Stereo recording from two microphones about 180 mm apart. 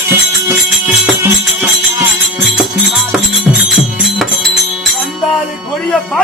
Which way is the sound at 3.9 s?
Centre (ahead or behind).